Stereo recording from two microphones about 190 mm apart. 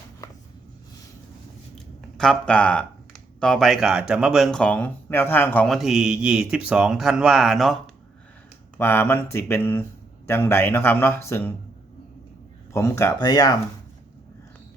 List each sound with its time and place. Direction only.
2.1 s speech: 5° left (ahead or behind)
8.8 s speech: 10° left (ahead or behind)
12.7 s speech: 15° left (ahead or behind)